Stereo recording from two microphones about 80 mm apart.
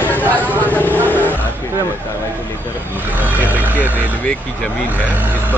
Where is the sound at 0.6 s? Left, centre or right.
Left.